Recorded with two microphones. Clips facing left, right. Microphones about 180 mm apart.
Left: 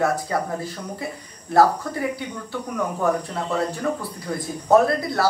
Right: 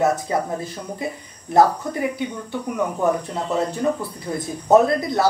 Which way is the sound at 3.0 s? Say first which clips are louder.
Right 1 dB; 20° right (ahead or behind).